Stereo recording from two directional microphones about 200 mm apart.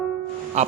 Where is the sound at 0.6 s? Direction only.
35° right (ahead or behind).